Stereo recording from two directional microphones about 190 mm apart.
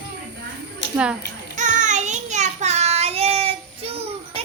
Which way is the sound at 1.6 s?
40° right (ahead or behind).